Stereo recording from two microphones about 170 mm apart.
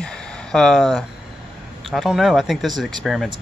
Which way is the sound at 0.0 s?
5° left (ahead or behind).